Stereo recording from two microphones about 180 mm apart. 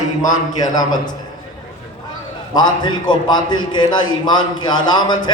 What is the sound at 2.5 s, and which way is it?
A man's voice, 25° left (ahead or behind).